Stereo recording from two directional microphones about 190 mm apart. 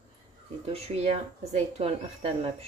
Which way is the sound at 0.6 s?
35° right (ahead or behind).